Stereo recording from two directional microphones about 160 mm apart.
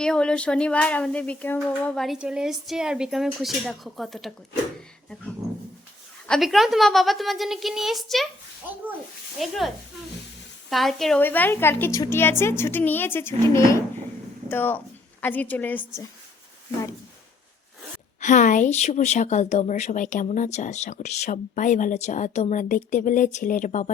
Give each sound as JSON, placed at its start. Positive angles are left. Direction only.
{"t": 0.0, "sound": "a woman's voice", "side_deg": 5}
{"t": 6.2, "sound": "speech", "side_deg": 0}
{"t": 9.4, "sound": "a woman's voice", "side_deg": 0}
{"t": 18.2, "sound": "speech", "side_deg": 50}